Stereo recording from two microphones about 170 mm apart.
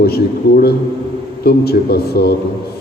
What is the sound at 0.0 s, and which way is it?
A man's voice, 65° left (ahead or behind).